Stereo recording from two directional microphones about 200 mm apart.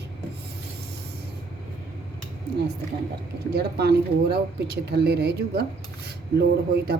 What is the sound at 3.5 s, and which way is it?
Speech, 55° right (ahead or behind).